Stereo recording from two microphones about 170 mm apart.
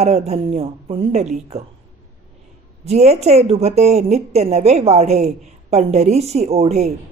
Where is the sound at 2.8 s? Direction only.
40° right (ahead or behind).